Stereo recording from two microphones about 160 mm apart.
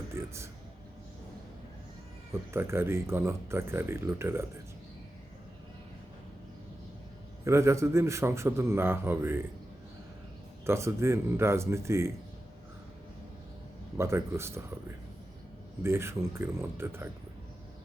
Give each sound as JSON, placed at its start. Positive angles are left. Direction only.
{"t": 0.1, "sound": "a sound", "side_deg": -15}
{"t": 2.3, "sound": "speech", "side_deg": -15}
{"t": 7.4, "sound": "speech", "side_deg": -15}
{"t": 10.7, "sound": "speech", "side_deg": -15}
{"t": 13.9, "sound": "speech", "side_deg": -15}